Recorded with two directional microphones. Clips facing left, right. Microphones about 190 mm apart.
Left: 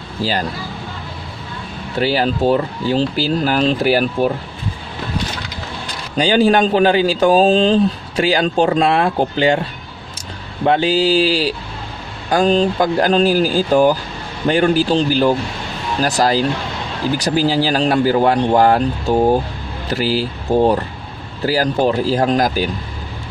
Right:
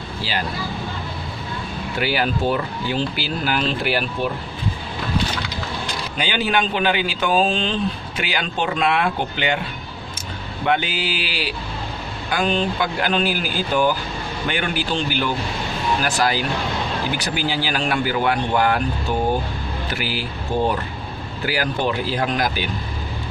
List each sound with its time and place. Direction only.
0.2 s speech: 40° left (ahead or behind)
2.0 s speech: 30° left (ahead or behind)
6.1 s speech: 35° left (ahead or behind)